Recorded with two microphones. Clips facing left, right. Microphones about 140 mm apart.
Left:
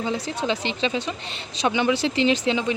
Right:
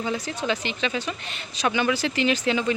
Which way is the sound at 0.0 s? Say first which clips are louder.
Left 2 dB; 25° left (ahead or behind).